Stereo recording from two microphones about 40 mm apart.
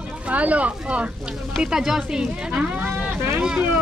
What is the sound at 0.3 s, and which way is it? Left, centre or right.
Speech, right.